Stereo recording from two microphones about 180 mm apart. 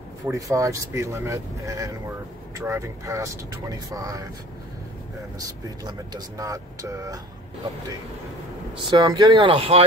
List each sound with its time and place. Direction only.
0.3 s speech: 20° right (ahead or behind)
5.9 s speech: 20° right (ahead or behind)
8.9 s speech: 20° right (ahead or behind)